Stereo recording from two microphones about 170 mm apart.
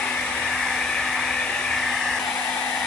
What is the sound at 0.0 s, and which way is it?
Hair dryer, 5° left (ahead or behind).